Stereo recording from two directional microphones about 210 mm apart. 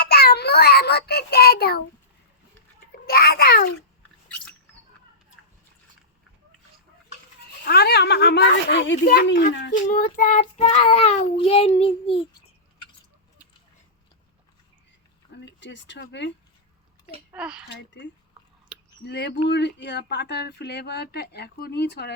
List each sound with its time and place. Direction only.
0.0 s child singing: 50° left (ahead or behind)
3.1 s a sound: 45° left (ahead or behind)
7.6 s speech: 50° left (ahead or behind)
9.8 s child singing: 40° left (ahead or behind)
15.3 s speech: 55° left (ahead or behind)
17.3 s speech: 5° right (ahead or behind)
17.7 s speech: 55° left (ahead or behind)
18.7 s a sound: 5° right (ahead or behind)
19.0 s speech: 55° left (ahead or behind)